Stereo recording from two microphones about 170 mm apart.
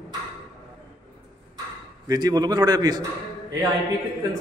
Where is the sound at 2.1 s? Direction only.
25° right (ahead or behind).